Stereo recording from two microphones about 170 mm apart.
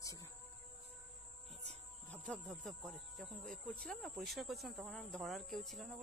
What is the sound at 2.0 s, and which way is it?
Speech, 10° left (ahead or behind).